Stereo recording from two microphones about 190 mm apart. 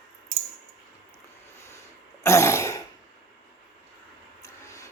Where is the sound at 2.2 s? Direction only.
15° left (ahead or behind).